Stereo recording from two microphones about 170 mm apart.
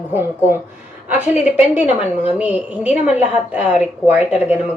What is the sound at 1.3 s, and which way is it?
Speech, 45° left (ahead or behind).